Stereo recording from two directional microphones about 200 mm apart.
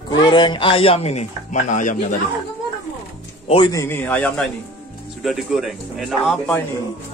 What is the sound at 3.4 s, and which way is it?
Speech, 25° left (ahead or behind).